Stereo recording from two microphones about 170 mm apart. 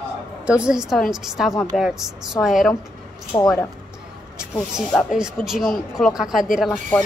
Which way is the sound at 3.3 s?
25° left (ahead or behind).